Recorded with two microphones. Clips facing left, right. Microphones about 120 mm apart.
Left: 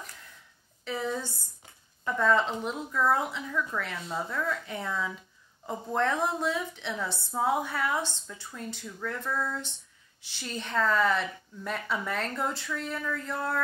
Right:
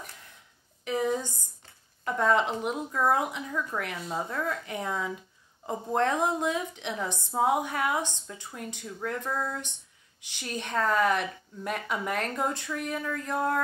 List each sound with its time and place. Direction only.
0.8 s a woman's voice: 15° right (ahead or behind)